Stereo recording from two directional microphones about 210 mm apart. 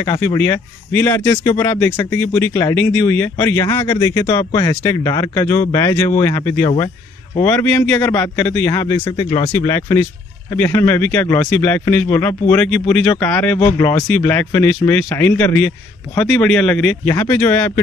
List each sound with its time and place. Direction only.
0.0 s speech: 15° left (ahead or behind)